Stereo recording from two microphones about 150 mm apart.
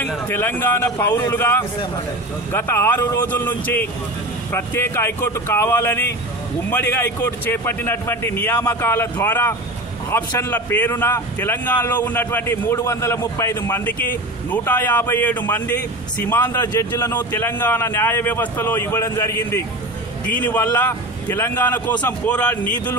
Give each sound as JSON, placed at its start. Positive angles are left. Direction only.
{"t": 0.3, "sound": "a man's voice", "side_deg": 15}